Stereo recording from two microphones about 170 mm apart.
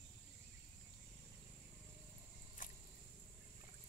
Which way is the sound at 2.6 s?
50° left (ahead or behind).